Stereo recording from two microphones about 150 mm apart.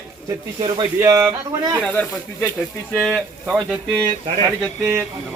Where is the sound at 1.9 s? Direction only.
10° left (ahead or behind); by 3.7 s 5° right (ahead or behind).